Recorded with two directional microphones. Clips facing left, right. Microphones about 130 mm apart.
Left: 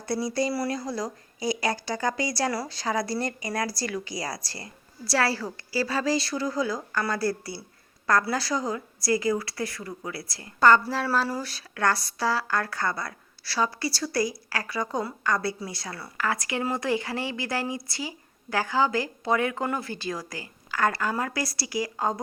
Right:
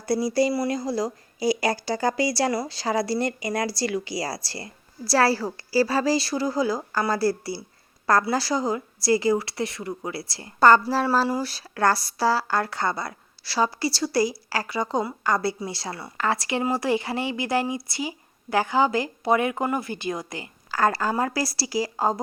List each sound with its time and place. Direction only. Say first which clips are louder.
0.1 s a woman's voice: right 5 dB; 35° right (ahead or behind)
20.7 s a woman's voice: right 3 dB; 35° right (ahead or behind)